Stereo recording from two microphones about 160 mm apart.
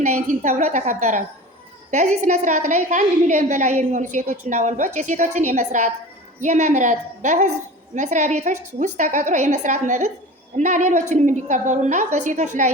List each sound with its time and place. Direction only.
0.0 s a woman's voice: 45° right (ahead or behind)